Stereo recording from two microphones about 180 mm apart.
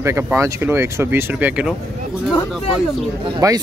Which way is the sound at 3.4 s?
20° right (ahead or behind).